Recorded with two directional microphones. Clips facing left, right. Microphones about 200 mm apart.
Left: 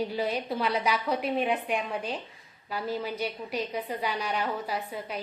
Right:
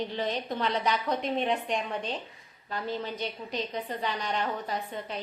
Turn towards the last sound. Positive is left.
turn(degrees=10)  # may be behind; listen again after turning